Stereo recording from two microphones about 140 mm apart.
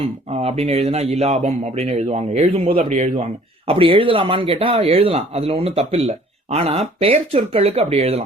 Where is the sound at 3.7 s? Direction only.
40° right (ahead or behind).